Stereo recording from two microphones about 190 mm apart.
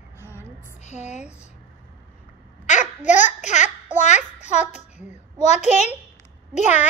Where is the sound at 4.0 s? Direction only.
40° left (ahead or behind).